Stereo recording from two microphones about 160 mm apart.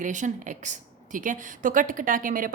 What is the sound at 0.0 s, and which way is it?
A woman's voice, 50° right (ahead or behind).